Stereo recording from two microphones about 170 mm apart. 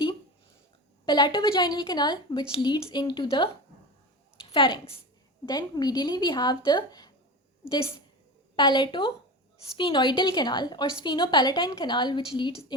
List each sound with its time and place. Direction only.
1.0 s a woman's voice: 25° left (ahead or behind)
4.5 s a woman's voice: 30° left (ahead or behind)
8.5 s a woman's voice: 25° left (ahead or behind)